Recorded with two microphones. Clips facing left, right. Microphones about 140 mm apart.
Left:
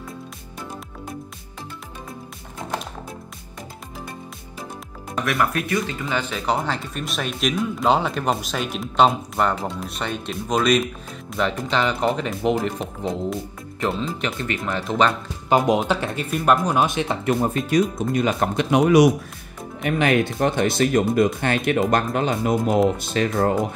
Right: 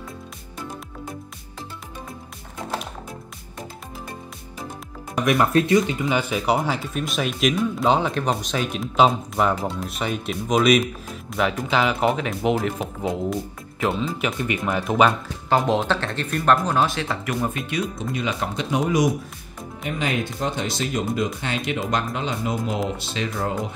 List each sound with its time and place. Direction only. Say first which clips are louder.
5.1 s speech: right 4 dB; 20° right (ahead or behind)
15.5 s speech: left 2 dB; 15° left (ahead or behind)
17.6 s speech: left 7 dB; 45° left (ahead or behind)
18.7 s speech: left 6 dB; 70° left (ahead or behind); by 23.5 s 50° left (ahead or behind)